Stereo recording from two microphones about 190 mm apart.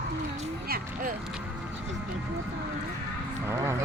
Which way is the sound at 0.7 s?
50° right (ahead or behind).